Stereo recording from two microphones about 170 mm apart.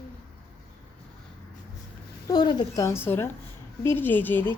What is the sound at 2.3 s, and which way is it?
A woman's voice, 25° left (ahead or behind).